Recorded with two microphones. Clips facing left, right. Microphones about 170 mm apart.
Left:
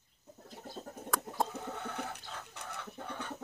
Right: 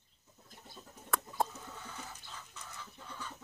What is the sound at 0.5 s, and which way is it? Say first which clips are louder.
Chicken: left 9 dB; 60° left (ahead or behind).